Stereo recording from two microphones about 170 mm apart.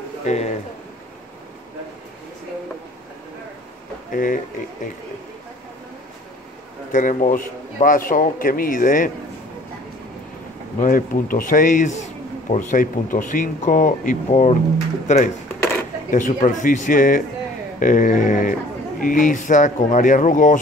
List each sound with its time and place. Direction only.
0.2 s speech: 45° left (ahead or behind)
4.1 s a man's voice: 50° left (ahead or behind)
6.9 s speech: 50° left (ahead or behind)
10.8 s speech: 55° left (ahead or behind)